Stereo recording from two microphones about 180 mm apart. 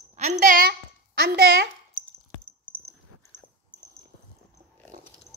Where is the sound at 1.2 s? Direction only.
65° right (ahead or behind).